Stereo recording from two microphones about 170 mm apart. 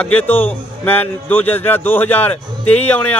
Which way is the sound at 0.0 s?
10° left (ahead or behind).